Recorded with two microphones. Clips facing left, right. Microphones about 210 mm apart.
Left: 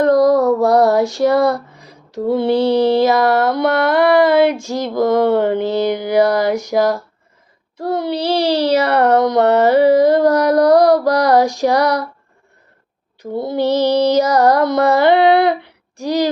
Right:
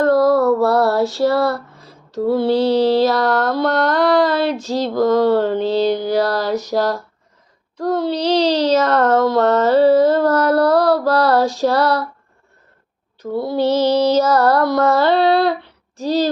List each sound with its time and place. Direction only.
0.0 s female singing: 15° left (ahead or behind)
2.9 s music: 10° left (ahead or behind)
13.3 s music: 20° left (ahead or behind)